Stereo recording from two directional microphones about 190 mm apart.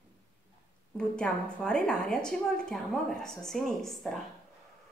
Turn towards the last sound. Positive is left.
turn(degrees=0)  # may be behind; listen again after turning